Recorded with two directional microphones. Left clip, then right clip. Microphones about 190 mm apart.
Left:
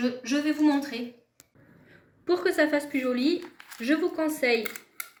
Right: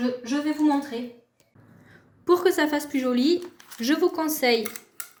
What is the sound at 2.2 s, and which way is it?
A woman's voice, 55° right (ahead or behind).